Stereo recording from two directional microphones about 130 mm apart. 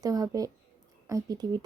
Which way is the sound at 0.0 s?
25° right (ahead or behind).